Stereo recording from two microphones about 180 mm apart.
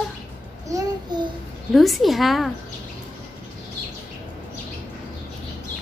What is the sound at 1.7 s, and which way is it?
Speech, centre (ahead or behind).